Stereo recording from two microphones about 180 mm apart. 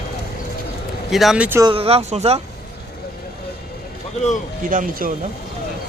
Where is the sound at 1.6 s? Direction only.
30° right (ahead or behind).